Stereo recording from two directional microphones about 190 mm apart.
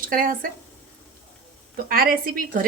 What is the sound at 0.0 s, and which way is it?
Speech, 45° right (ahead or behind).